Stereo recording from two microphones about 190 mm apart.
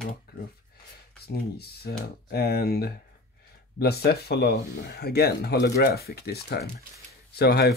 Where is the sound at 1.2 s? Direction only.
55° left (ahead or behind).